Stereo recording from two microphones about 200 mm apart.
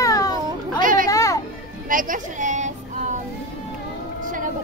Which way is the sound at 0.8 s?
40° right (ahead or behind).